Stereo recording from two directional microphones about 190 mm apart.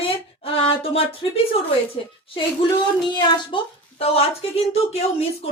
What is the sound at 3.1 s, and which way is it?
A woman's voice, 20° left (ahead or behind).